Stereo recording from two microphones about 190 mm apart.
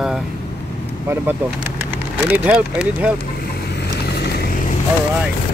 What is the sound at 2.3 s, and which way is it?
Speech, 10° right (ahead or behind).